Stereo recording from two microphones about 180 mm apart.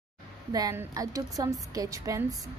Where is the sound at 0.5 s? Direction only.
20° right (ahead or behind).